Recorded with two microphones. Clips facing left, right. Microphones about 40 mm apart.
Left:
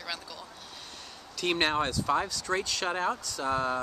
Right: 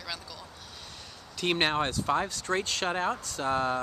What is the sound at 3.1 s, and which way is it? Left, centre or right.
Speech, right.